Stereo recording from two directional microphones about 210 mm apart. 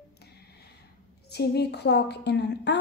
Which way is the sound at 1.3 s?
50° left (ahead or behind).